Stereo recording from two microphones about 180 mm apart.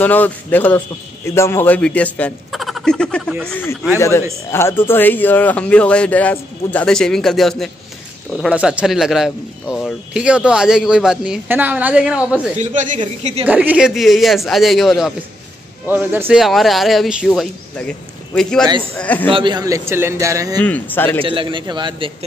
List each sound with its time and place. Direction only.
0.0 s a man's voice: 10° left (ahead or behind)
12.5 s a woman's voice: 45° right (ahead or behind)
13.0 s a woman's voice: 30° right (ahead or behind)
13.5 s a man's voice: 10° right (ahead or behind); by 19.2 s 10° left (ahead or behind)
19.2 s a man's voice: 30° right (ahead or behind)
20.6 s a man's voice: 10° left (ahead or behind)
21.2 s a man's voice: 30° right (ahead or behind)